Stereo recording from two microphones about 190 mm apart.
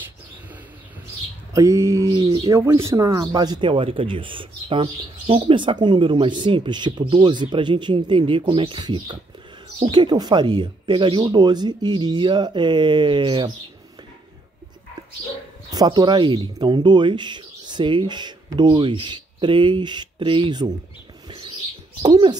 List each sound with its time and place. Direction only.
1.5 s speech: 15° right (ahead or behind)
15.7 s speech: 20° right (ahead or behind)
22.0 s speech: 20° right (ahead or behind)